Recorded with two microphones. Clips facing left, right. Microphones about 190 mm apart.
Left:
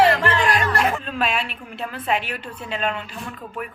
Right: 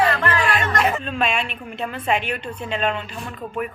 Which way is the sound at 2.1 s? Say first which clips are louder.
Right 2 dB; 5° left (ahead or behind).